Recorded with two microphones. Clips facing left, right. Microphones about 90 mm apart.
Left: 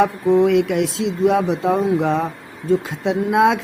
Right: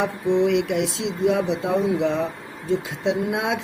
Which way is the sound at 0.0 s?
50° left (ahead or behind).